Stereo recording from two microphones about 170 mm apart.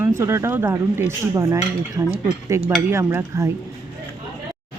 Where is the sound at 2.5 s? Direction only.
15° right (ahead or behind).